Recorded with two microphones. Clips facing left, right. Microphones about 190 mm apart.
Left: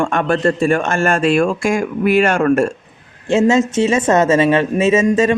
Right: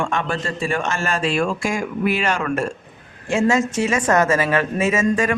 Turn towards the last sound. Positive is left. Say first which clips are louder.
# left 6 dB
turn(degrees=25)  # may be behind; listen again after turning